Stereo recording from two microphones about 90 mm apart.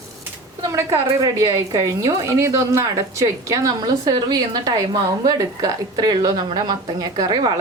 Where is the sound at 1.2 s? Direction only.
40° right (ahead or behind).